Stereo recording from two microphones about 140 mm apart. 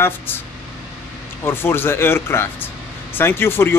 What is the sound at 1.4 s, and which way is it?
Speech, 15° left (ahead or behind).